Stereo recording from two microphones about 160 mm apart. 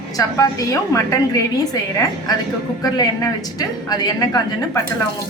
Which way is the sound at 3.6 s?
25° left (ahead or behind).